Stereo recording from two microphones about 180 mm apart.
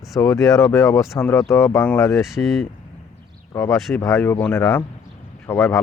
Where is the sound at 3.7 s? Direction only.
Centre (ahead or behind).